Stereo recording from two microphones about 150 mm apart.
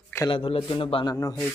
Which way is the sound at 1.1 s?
25° left (ahead or behind).